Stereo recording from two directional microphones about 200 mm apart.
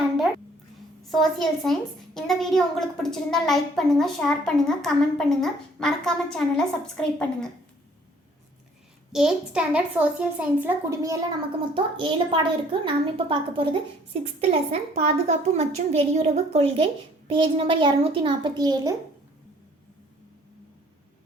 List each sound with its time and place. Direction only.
1.0 s a woman's voice: centre (ahead or behind)
9.1 s a child's voice: 5° right (ahead or behind); by 18.9 s 20° right (ahead or behind)